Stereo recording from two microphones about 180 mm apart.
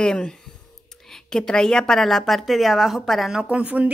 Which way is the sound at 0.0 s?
5° left (ahead or behind).